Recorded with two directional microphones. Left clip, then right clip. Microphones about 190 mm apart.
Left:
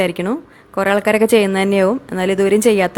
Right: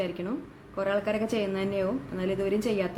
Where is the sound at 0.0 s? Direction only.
45° left (ahead or behind).